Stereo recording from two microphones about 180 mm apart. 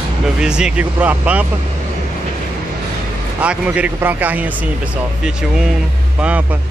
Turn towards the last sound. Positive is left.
turn(degrees=-10)  # may be behind; listen again after turning